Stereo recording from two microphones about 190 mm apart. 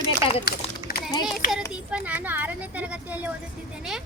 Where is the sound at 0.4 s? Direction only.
55° left (ahead or behind).